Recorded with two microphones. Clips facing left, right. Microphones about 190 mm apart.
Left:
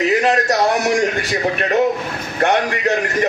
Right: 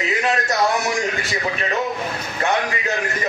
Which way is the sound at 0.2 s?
40° left (ahead or behind).